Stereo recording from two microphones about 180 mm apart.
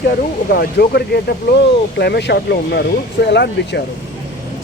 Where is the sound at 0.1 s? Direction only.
55° left (ahead or behind); by 3.8 s 70° left (ahead or behind).